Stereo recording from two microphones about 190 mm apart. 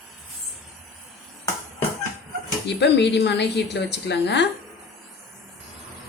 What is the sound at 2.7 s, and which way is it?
A woman's voice, 65° left (ahead or behind).